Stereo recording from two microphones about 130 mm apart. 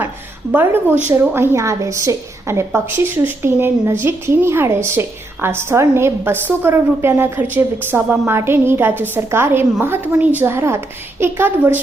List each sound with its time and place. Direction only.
0.5 s a woman's voice: 15° right (ahead or behind)